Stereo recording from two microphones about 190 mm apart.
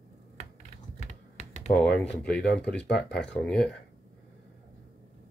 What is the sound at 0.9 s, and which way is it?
Typing, 35° left (ahead or behind).